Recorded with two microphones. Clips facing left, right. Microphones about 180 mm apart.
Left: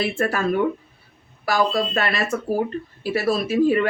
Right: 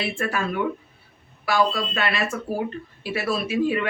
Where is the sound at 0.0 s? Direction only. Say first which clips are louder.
Left 4 dB; 40° left (ahead or behind).